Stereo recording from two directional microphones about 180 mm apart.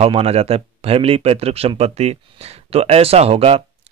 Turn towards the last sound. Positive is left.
turn(degrees=-35)  # may be behind; listen again after turning